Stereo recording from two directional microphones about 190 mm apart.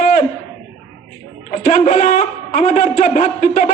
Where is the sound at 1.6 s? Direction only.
35° left (ahead or behind).